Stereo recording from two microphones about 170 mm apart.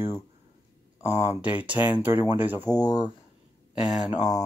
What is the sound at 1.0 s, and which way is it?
Speech, 40° left (ahead or behind).